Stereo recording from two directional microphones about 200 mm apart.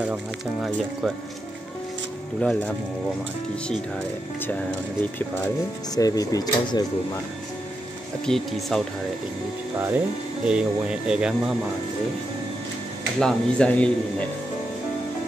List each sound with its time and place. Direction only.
0.0 s speech: 5° right (ahead or behind)
5.9 s speech: 20° left (ahead or behind)
8.3 s speech: centre (ahead or behind)
9.8 s speech: 10° right (ahead or behind)
13.2 s speech: 5° left (ahead or behind)